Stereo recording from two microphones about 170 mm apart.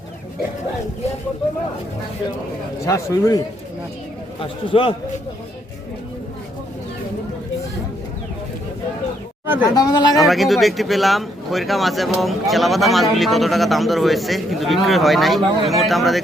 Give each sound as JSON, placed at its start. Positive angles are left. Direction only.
{"t": 2.8, "sound": "a man's voice", "side_deg": 20}
{"t": 4.4, "sound": "a man's voice", "side_deg": 30}
{"t": 9.7, "sound": "a man's voice", "side_deg": 25}
{"t": 10.2, "sound": "speech", "side_deg": 0}